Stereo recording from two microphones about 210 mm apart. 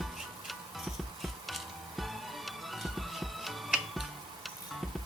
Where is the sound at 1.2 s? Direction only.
Centre (ahead or behind).